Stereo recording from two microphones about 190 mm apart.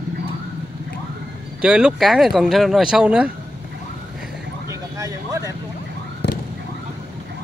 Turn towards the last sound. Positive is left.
turn(degrees=60)  # may be behind; listen again after turning